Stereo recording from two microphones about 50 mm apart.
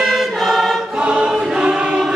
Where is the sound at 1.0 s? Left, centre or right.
Right.